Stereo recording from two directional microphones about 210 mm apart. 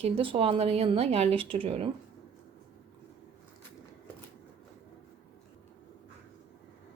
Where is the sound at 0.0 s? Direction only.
25° right (ahead or behind).